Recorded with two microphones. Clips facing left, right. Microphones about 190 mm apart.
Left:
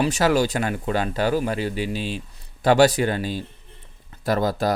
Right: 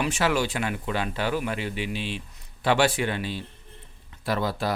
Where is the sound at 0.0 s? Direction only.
40° left (ahead or behind).